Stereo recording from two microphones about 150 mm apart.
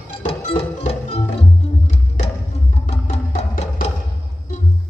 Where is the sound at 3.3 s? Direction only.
50° left (ahead or behind).